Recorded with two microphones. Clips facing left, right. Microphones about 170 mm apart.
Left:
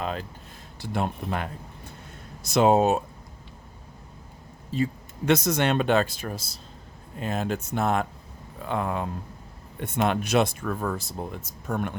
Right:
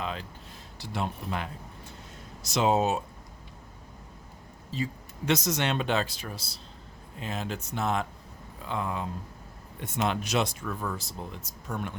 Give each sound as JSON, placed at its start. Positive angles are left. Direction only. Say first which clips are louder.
{"t": 0.0, "sound": "a sound", "louder": "left 4 dB", "side_deg": 45}
{"t": 0.8, "sound": "speech", "louder": "left 5 dB", "side_deg": 55}
{"t": 4.7, "sound": "speech", "louder": "left 6 dB", "side_deg": 55}